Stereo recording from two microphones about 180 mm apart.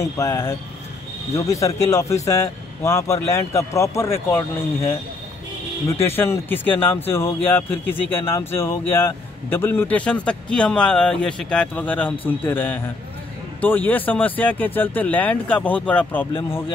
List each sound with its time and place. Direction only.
0.0 s a man's voice: 15° left (ahead or behind)